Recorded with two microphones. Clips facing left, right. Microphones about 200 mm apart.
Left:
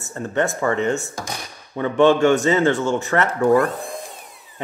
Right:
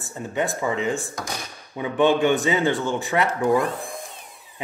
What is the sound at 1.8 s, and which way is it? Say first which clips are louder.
Speech: left 4 dB; 15° right (ahead or behind).